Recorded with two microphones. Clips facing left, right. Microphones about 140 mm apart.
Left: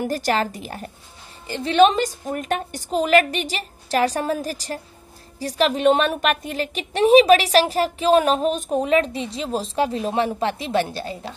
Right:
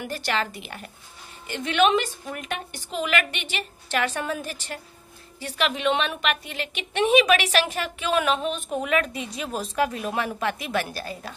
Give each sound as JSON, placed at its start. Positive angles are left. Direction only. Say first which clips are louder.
{"t": 0.0, "sound": "a woman's voice", "louder": "left 6 dB", "side_deg": 40}